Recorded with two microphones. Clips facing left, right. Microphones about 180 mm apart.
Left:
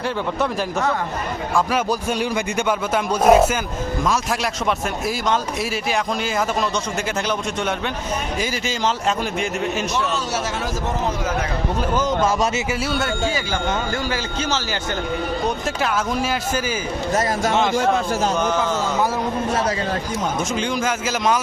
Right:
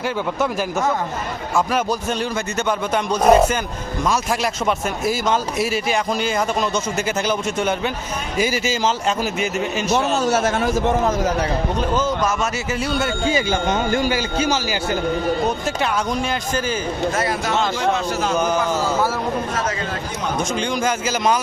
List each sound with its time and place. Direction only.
1.5 s a man's voice: 10° left (ahead or behind)
8.4 s a man's voice: 5° right (ahead or behind)
9.9 s a man's voice: 50° right (ahead or behind)
11.8 s speech: 10° left (ahead or behind)
12.8 s a man's voice: centre (ahead or behind)
13.3 s speech: 20° right (ahead or behind)
15.4 s a man's voice: centre (ahead or behind)
17.2 s speech: 45° left (ahead or behind)
20.5 s a man's voice: centre (ahead or behind)